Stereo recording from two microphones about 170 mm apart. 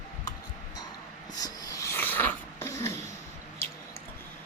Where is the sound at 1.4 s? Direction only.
20° left (ahead or behind).